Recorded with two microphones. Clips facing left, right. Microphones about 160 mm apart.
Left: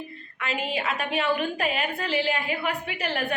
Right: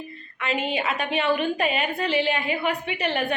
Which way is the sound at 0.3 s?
Centre (ahead or behind).